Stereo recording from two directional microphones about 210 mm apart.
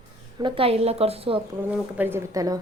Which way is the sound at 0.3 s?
25° right (ahead or behind).